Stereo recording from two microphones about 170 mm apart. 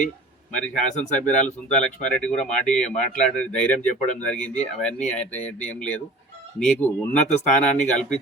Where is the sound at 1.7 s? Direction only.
5° left (ahead or behind).